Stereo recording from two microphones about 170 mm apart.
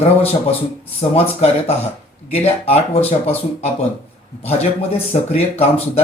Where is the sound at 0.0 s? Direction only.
35° left (ahead or behind).